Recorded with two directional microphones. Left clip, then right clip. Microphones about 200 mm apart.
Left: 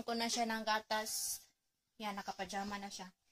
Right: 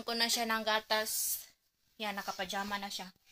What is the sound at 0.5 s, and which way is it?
A woman's voice, 30° right (ahead or behind).